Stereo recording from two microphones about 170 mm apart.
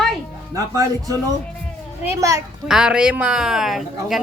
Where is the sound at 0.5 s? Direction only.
20° right (ahead or behind).